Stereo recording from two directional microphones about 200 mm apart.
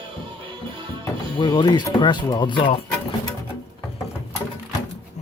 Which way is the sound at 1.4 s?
25° left (ahead or behind).